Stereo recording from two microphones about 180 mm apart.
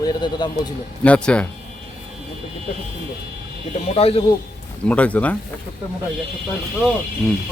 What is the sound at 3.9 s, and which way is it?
Speech, 35° left (ahead or behind).